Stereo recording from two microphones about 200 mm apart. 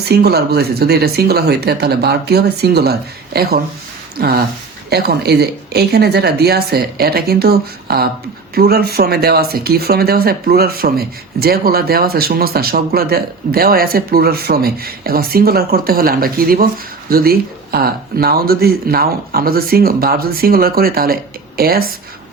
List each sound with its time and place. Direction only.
0.0 s speech: 50° right (ahead or behind)
4.2 s speech: 50° right (ahead or behind)